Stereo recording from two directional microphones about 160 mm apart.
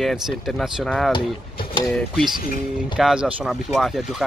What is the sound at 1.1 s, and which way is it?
Speech, 30° left (ahead or behind).